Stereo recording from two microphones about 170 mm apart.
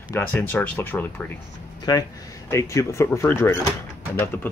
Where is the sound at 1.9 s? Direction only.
25° left (ahead or behind).